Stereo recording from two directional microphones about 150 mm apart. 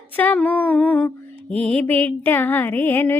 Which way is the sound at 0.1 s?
10° left (ahead or behind).